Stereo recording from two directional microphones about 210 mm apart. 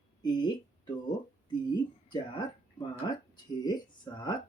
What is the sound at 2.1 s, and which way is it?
Speech, 20° left (ahead or behind).